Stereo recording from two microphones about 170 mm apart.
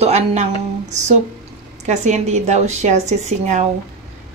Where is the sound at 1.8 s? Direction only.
45° right (ahead or behind).